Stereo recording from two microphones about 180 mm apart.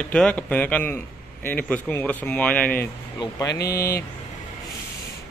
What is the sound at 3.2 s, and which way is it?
Speech, 20° left (ahead or behind).